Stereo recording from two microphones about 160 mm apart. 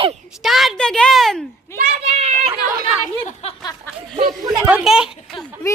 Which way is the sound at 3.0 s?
45° left (ahead or behind).